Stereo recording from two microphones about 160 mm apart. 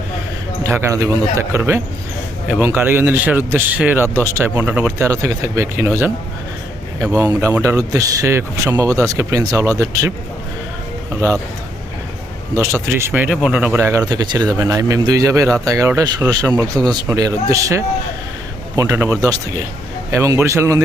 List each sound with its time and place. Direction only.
0.6 s a man's voice: 15° right (ahead or behind)
7.1 s speech: 20° right (ahead or behind)
11.1 s a man's voice: 15° right (ahead or behind)
12.5 s a man's voice: 15° right (ahead or behind)